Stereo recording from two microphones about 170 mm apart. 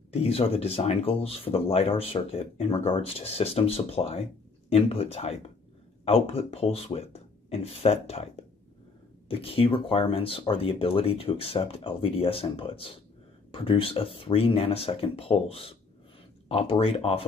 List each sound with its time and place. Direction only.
0.1 s speech: 35° left (ahead or behind)
9.3 s speech: 35° left (ahead or behind)